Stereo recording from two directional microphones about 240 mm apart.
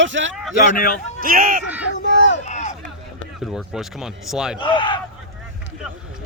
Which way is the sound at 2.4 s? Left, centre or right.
Left.